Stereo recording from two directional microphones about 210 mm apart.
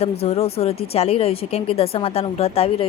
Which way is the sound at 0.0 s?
30° left (ahead or behind).